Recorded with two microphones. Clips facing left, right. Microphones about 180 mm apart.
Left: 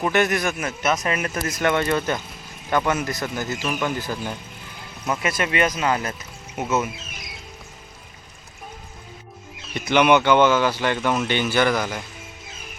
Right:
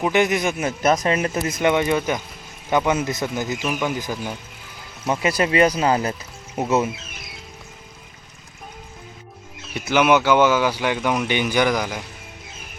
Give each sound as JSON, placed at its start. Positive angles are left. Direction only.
{"t": 0.0, "sound": "speech", "side_deg": -15}
{"t": 0.8, "sound": "speech", "side_deg": -35}
{"t": 5.0, "sound": "speech", "side_deg": -30}
{"t": 9.7, "sound": "speech", "side_deg": -5}